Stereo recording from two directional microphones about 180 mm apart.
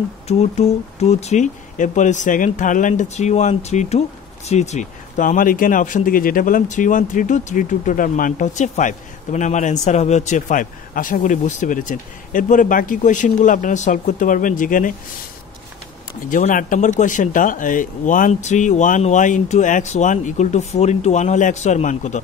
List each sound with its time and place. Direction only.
0.3 s speech: 35° left (ahead or behind)
16.3 s speech: 45° left (ahead or behind)